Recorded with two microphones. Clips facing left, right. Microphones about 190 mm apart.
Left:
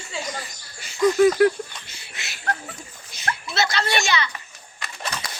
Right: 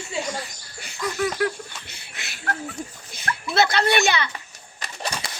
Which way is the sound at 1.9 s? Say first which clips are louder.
Even; 55° right (ahead or behind).